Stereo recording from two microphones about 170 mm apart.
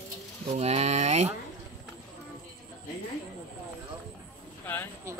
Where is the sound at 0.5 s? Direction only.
40° right (ahead or behind).